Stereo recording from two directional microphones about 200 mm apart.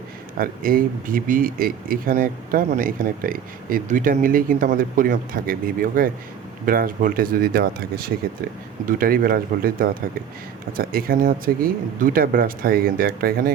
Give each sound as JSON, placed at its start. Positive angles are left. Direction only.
{"t": 0.3, "sound": "speech", "side_deg": -45}